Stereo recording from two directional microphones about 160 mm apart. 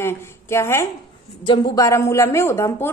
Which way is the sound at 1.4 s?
30° left (ahead or behind).